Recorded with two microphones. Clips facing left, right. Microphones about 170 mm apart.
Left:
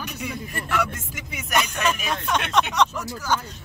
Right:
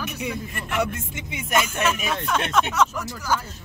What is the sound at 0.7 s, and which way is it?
Speech, 25° right (ahead or behind).